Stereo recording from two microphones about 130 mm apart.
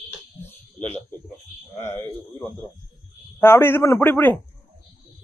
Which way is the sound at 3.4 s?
20° left (ahead or behind).